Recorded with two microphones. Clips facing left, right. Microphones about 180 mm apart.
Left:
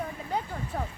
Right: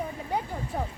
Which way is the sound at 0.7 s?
15° right (ahead or behind).